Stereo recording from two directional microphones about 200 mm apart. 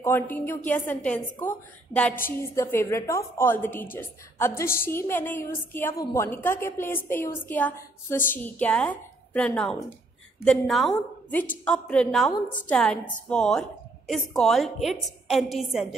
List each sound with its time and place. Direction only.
0.0 s a woman's voice: 10° left (ahead or behind)